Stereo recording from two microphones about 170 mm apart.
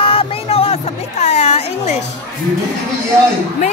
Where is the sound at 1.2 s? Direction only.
40° left (ahead or behind).